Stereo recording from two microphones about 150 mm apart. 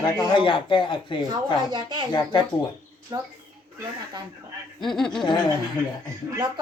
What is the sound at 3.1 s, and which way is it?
Speech, 25° right (ahead or behind).